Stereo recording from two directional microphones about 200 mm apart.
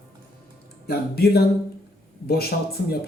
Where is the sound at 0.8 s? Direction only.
50° left (ahead or behind).